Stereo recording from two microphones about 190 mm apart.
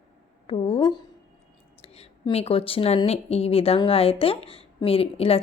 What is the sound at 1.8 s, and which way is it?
Speech, 30° left (ahead or behind).